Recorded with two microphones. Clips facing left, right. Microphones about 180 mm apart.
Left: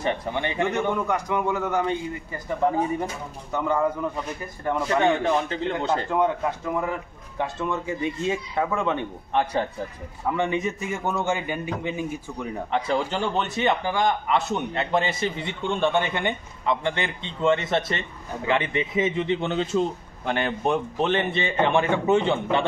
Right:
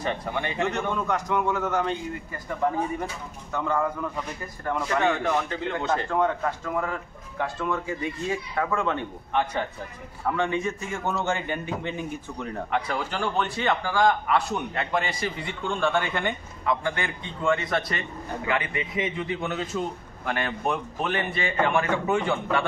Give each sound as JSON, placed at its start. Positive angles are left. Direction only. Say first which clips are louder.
{"t": 0.0, "sound": "a man's voice", "louder": "left 3 dB", "side_deg": 25}
{"t": 4.8, "sound": "a man's voice", "louder": "left 3 dB", "side_deg": 25}
{"t": 9.3, "sound": "a man's voice", "louder": "left 3 dB", "side_deg": 35}
{"t": 10.3, "sound": "a man's voice", "louder": "left 2 dB", "side_deg": 15}
{"t": 12.7, "sound": "a man's voice", "louder": "left 4 dB", "side_deg": 25}